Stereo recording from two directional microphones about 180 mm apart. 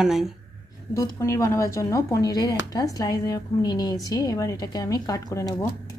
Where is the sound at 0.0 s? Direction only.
Centre (ahead or behind).